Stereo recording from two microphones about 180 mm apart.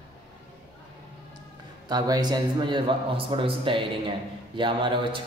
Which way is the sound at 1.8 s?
20° right (ahead or behind).